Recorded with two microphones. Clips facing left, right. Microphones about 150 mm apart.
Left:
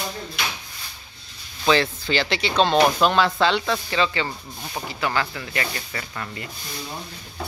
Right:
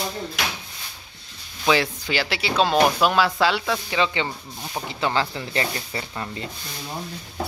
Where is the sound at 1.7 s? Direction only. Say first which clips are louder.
Left 1 dB; 10° right (ahead or behind).